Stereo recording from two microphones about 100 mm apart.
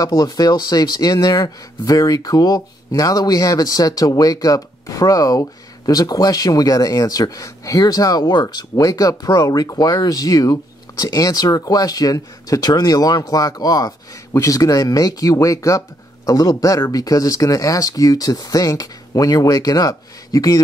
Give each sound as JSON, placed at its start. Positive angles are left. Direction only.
{"t": 0.0, "sound": "a man's voice", "side_deg": 40}